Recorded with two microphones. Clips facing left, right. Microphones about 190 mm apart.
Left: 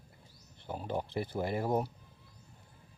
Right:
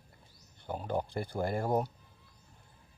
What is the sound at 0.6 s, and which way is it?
Speech, centre (ahead or behind).